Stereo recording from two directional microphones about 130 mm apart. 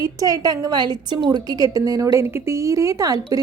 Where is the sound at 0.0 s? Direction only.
30° right (ahead or behind).